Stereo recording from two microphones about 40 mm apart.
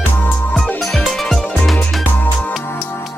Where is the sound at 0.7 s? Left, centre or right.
Centre.